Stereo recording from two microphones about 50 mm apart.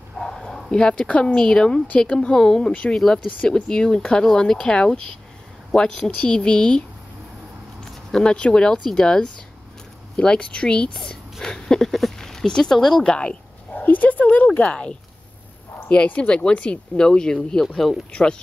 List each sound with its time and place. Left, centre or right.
0.2 s a sound: centre
0.7 s speech: centre
3.3 s speech: left
7.8 s speech: centre
11.3 s dog: centre
13.0 s speech: left
13.7 s speech: left; by 17.6 s centre